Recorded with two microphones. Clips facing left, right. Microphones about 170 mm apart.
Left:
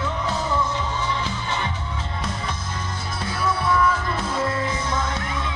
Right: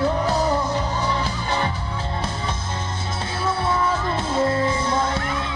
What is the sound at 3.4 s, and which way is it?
Music, 25° right (ahead or behind).